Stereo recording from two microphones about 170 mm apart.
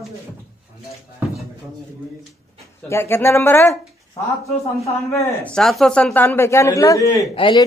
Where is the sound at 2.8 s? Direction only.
15° left (ahead or behind).